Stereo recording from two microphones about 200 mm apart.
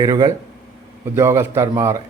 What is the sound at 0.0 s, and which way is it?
A man's voice, 15° right (ahead or behind).